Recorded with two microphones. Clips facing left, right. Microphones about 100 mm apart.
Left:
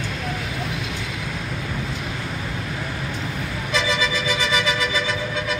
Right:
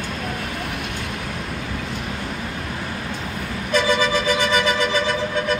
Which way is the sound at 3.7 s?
50° right (ahead or behind).